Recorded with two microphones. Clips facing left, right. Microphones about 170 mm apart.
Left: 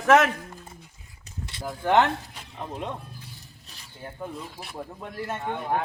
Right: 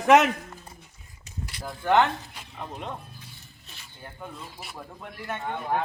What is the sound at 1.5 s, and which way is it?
Speech, 25° left (ahead or behind).